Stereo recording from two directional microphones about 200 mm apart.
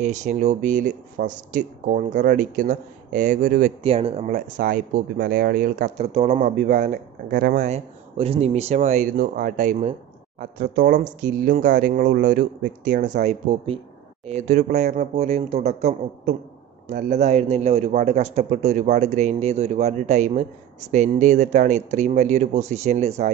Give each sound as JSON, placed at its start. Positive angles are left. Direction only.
{"t": 0.0, "sound": "speech", "side_deg": -35}
{"t": 3.8, "sound": "speech", "side_deg": -30}